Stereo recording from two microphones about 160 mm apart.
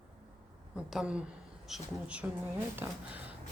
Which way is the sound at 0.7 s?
5° right (ahead or behind).